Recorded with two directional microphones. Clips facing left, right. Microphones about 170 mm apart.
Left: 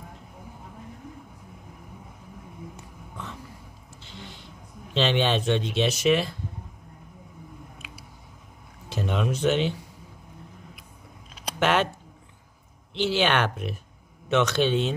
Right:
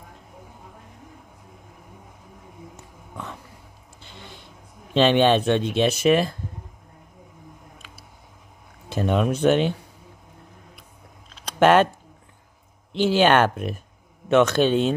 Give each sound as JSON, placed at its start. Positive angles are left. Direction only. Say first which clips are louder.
{"t": 2.7, "sound": "a sound", "louder": "right 1 dB", "side_deg": -55}
{"t": 4.9, "sound": "speech", "louder": "right 6 dB", "side_deg": -50}
{"t": 8.8, "sound": "speech", "louder": "right 6 dB", "side_deg": -50}
{"t": 11.6, "sound": "speech", "louder": "right 7 dB", "side_deg": -50}
{"t": 12.9, "sound": "speech", "louder": "right 6 dB", "side_deg": -45}